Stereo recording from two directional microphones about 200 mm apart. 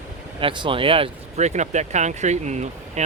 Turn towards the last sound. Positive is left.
turn(degrees=-35)  # may be behind; listen again after turning